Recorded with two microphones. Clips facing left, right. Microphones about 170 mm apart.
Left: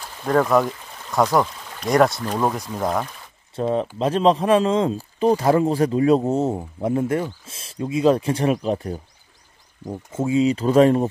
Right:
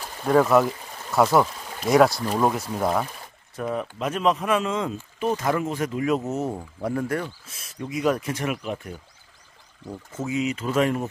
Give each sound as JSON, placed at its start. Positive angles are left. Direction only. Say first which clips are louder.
{"t": 0.3, "sound": "speech", "louder": "even", "side_deg": -5}
{"t": 3.5, "sound": "speech", "louder": "left 6 dB", "side_deg": 30}
{"t": 10.1, "sound": "speech", "louder": "left 7 dB", "side_deg": 30}